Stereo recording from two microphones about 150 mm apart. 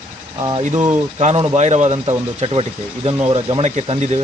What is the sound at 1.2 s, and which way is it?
Speech, 45° right (ahead or behind).